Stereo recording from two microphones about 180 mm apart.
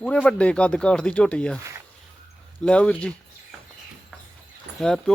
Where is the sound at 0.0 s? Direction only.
5° left (ahead or behind).